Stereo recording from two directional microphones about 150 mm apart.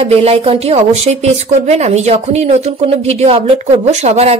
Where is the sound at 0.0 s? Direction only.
45° right (ahead or behind).